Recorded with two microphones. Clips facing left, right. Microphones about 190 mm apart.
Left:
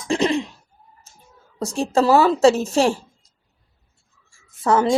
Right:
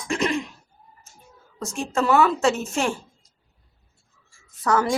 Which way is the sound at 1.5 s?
35° left (ahead or behind).